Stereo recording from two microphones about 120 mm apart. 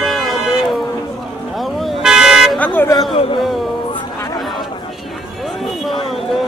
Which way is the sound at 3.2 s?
50° left (ahead or behind).